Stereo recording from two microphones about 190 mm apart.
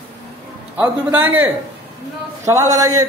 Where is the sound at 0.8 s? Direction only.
10° right (ahead or behind).